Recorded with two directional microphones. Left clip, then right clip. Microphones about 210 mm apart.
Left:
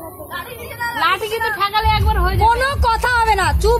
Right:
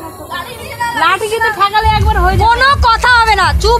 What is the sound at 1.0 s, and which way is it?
A woman's voice, 35° right (ahead or behind).